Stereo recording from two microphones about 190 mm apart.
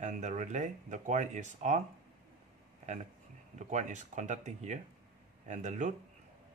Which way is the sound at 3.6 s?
40° right (ahead or behind).